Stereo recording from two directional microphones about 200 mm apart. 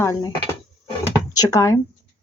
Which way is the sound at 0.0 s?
15° left (ahead or behind).